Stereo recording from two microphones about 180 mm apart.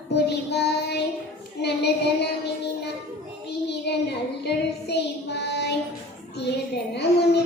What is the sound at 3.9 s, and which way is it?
Child singing, 70° left (ahead or behind).